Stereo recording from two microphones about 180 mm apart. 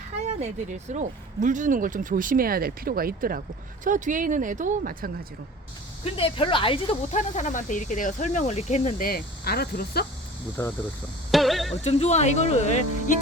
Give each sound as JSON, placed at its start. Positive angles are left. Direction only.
{"t": 0.2, "sound": "speech", "side_deg": -40}
{"t": 6.1, "sound": "speech", "side_deg": 30}
{"t": 7.1, "sound": "speech", "side_deg": 45}
{"t": 10.6, "sound": "speech", "side_deg": 10}
{"t": 11.3, "sound": "a sound", "side_deg": 0}
{"t": 11.8, "sound": "speech", "side_deg": 35}